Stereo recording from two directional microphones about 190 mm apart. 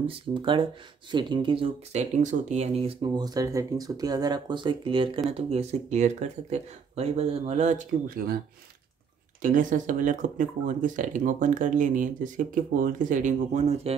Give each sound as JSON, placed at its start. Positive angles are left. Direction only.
{"t": 0.0, "sound": "speech", "side_deg": -25}
{"t": 9.4, "sound": "speech", "side_deg": -45}